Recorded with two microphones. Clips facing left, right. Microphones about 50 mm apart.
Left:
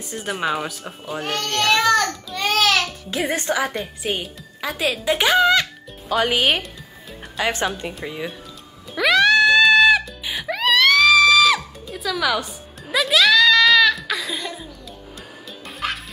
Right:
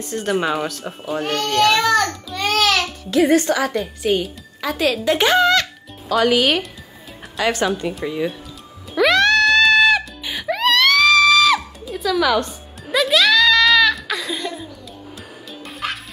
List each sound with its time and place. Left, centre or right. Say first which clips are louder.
0.0 s speech: right 4 dB; centre
3.3 s speech: right 4 dB; centre
6.1 s speech: right 3 dB; left
7.9 s speech: right 6 dB; centre
8.9 s music: right 1 dB; centre